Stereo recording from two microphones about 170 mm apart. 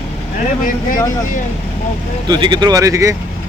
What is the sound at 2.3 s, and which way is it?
Speech, 25° right (ahead or behind).